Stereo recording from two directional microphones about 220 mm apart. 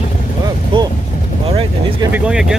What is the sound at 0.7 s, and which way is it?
Vehicle, 20° right (ahead or behind).